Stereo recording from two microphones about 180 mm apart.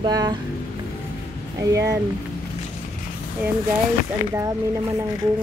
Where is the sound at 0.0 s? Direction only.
25° right (ahead or behind).